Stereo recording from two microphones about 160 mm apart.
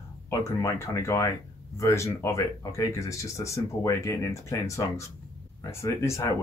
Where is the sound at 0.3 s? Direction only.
20° left (ahead or behind).